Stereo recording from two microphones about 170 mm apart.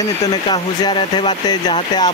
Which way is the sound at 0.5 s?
25° left (ahead or behind).